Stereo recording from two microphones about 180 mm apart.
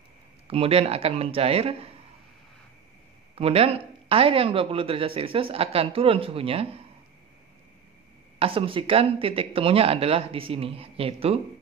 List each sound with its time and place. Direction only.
0.5 s speech: 35° right (ahead or behind)
3.3 s speech: 35° right (ahead or behind)
8.4 s speech: 30° right (ahead or behind)